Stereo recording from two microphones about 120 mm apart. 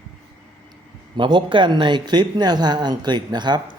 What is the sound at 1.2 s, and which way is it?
Speech, 40° right (ahead or behind).